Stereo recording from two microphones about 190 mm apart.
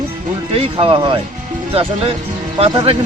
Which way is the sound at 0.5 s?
30° right (ahead or behind).